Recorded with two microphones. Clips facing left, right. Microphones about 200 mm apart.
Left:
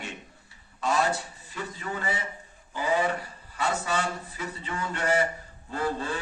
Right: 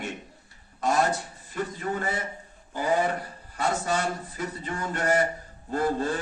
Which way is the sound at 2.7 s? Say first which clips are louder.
Right 1 dB; 50° right (ahead or behind).